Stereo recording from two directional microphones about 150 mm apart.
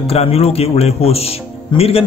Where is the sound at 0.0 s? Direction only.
40° left (ahead or behind).